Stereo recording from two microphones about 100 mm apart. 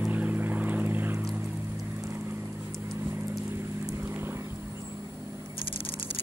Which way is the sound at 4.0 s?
20° right (ahead or behind).